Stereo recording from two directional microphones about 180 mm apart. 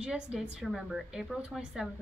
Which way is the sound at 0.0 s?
5° right (ahead or behind).